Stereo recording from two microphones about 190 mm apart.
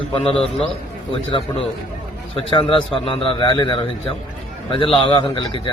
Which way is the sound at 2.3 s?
25° left (ahead or behind).